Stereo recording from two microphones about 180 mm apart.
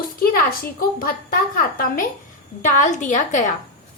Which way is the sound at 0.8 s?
55° left (ahead or behind).